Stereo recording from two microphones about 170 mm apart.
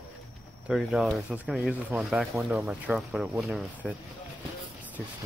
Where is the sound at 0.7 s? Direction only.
Centre (ahead or behind).